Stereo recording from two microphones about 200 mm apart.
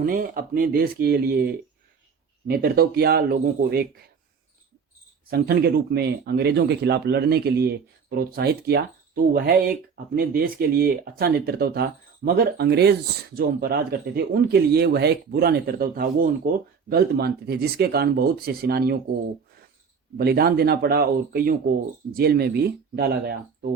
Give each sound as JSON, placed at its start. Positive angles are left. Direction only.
{"t": 0.0, "sound": "speech", "side_deg": -45}
{"t": 5.3, "sound": "speech", "side_deg": -50}
{"t": 20.1, "sound": "speech", "side_deg": -50}